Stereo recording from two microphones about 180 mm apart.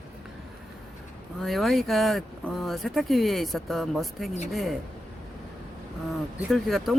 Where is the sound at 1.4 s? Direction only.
Centre (ahead or behind).